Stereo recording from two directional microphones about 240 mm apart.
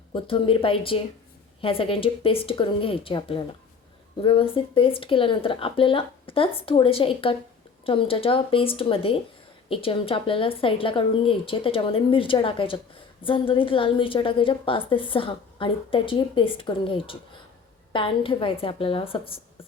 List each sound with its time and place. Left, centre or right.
0.1 s a woman's voice: left